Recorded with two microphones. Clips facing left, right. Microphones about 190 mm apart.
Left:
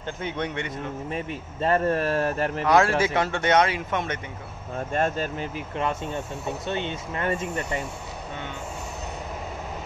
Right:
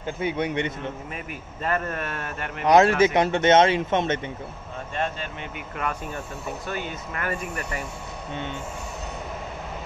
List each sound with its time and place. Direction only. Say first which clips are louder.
0.0 s a man's voice: right 4 dB; 10° right (ahead or behind)
1.1 s speech: left 5 dB; 30° left (ahead or behind)
2.6 s speech: right 4 dB; 20° right (ahead or behind)
4.9 s speech: left 4 dB; 45° left (ahead or behind)
5.8 s speech: left 3 dB; 25° left (ahead or behind)